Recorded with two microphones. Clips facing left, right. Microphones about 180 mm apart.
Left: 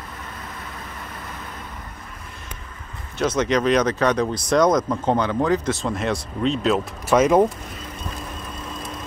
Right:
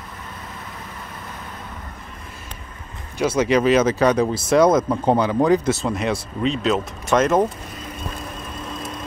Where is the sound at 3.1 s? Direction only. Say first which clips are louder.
Right 2 dB; 10° right (ahead or behind); by 7.5 s 10° left (ahead or behind).